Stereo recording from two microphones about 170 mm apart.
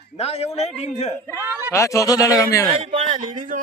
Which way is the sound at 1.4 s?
15° right (ahead or behind).